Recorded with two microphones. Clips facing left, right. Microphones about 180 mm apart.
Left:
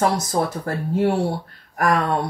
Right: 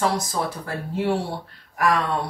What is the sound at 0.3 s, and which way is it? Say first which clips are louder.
Speech: left 5 dB; 45° left (ahead or behind).